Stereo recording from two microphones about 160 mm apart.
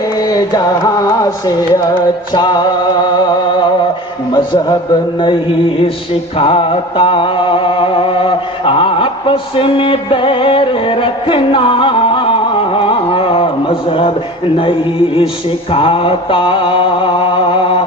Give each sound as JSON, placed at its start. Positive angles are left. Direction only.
{"t": 0.2, "sound": "music", "side_deg": 25}
{"t": 6.3, "sound": "music", "side_deg": 30}
{"t": 14.6, "sound": "mantra", "side_deg": 35}